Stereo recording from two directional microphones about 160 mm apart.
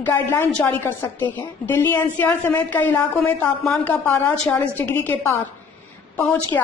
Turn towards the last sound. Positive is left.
turn(degrees=15)  # may be behind; listen again after turning